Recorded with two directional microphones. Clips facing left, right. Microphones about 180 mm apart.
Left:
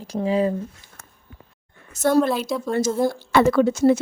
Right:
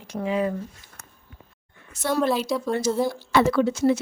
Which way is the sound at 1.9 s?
45° left (ahead or behind).